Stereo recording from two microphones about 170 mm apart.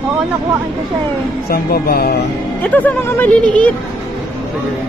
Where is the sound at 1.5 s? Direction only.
60° left (ahead or behind).